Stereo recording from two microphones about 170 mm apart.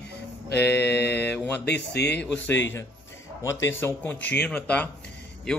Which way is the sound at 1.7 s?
80° left.